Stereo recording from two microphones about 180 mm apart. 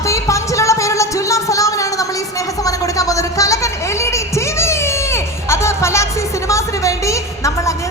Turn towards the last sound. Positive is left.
turn(degrees=15)  # may be behind; listen again after turning